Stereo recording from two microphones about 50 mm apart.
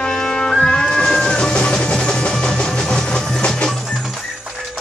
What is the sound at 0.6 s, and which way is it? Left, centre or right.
Cat, centre.